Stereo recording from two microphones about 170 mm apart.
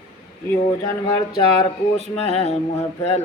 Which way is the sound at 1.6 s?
35° left (ahead or behind).